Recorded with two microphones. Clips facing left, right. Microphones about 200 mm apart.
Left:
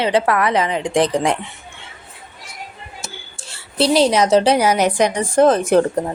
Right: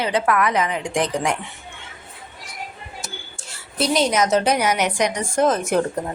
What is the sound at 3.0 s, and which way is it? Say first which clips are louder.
A woman's voice: left 1 dB; 25° left (ahead or behind).